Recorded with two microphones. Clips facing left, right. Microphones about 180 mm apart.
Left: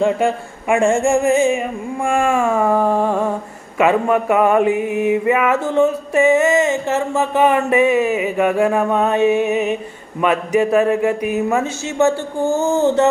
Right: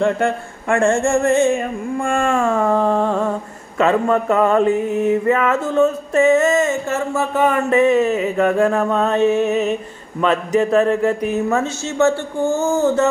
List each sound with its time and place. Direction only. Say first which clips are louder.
0.0 s mantra: left 1 dB; 10° left (ahead or behind)